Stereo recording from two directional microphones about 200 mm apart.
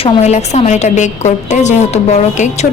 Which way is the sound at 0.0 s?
35° left (ahead or behind).